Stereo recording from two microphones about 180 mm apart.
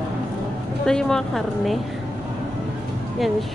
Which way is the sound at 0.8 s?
5° left (ahead or behind).